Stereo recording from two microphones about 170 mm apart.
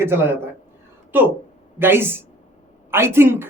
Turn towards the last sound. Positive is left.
turn(degrees=-15)  # may be behind; listen again after turning